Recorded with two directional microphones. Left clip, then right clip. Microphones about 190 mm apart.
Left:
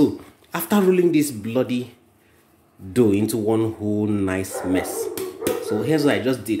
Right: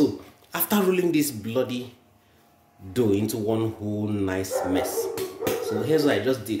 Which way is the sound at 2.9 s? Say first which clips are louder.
Left 5 dB; 40° left (ahead or behind).